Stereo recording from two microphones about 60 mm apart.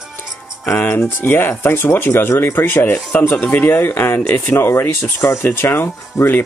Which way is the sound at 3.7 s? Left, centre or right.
Left.